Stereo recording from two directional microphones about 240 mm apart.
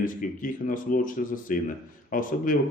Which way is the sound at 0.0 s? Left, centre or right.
Left.